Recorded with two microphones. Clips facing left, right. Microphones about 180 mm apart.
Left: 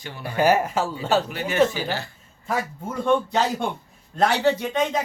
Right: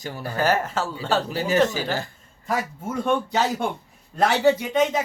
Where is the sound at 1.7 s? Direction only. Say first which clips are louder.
Right 1 dB; 45° right (ahead or behind).